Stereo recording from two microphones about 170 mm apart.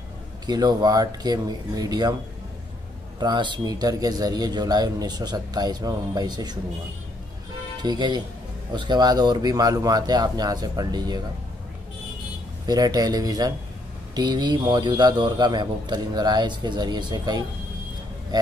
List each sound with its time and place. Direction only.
0.5 s a man's voice: 25° right (ahead or behind)
3.2 s a man's voice: 25° right (ahead or behind)
7.8 s a man's voice: 25° right (ahead or behind)
12.6 s a man's voice: 20° right (ahead or behind)